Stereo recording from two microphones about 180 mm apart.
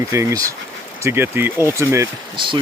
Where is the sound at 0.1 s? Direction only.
15° right (ahead or behind).